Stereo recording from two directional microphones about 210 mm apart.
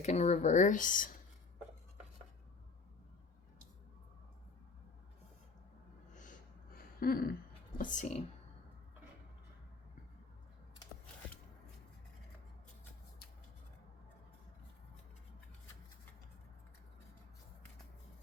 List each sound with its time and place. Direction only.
0.0 s speech: 35° left (ahead or behind)
6.7 s a sound: 45° left (ahead or behind)
7.8 s speech: 35° left (ahead or behind)